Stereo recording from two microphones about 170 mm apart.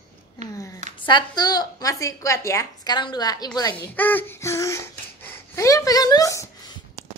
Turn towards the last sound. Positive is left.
turn(degrees=20)  # may be behind; listen again after turning